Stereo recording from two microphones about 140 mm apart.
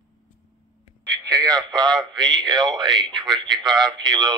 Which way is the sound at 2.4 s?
30° right (ahead or behind).